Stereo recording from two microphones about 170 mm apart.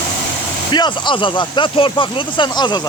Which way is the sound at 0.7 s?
25° left (ahead or behind).